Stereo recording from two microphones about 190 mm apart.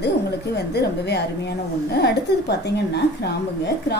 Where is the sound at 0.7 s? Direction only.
60° left (ahead or behind).